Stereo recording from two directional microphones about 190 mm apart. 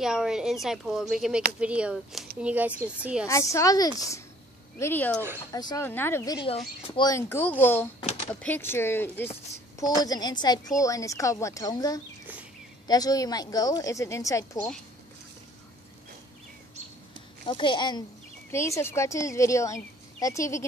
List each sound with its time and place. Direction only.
0.0 s speech: 5° right (ahead or behind)
3.3 s speech: 15° left (ahead or behind)
5.5 s a woman's voice: 20° left (ahead or behind)
17.5 s a woman's voice: 25° left (ahead or behind)